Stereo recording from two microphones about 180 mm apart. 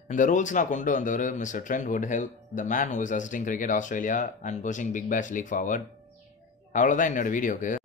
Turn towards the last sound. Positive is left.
turn(degrees=45)  # may be behind; listen again after turning